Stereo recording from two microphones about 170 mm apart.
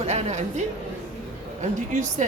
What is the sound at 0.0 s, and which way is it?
Speech, 40° right (ahead or behind).